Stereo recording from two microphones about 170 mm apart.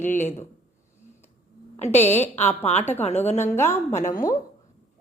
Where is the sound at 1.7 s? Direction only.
40° left (ahead or behind).